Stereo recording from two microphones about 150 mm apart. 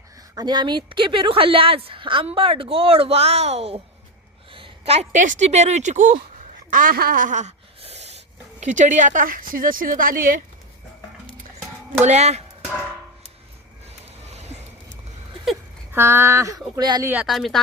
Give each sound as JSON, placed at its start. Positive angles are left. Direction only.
{"t": 0.3, "sound": "a woman's voice", "side_deg": -30}
{"t": 6.7, "sound": "a sound", "side_deg": -65}
{"t": 7.8, "sound": "dog", "side_deg": -45}
{"t": 8.6, "sound": "a woman's voice", "side_deg": -55}
{"t": 12.0, "sound": "speech", "side_deg": -45}
{"t": 14.3, "sound": "a sound", "side_deg": -45}
{"t": 15.9, "sound": "speech", "side_deg": -15}
{"t": 17.2, "sound": "speech", "side_deg": 0}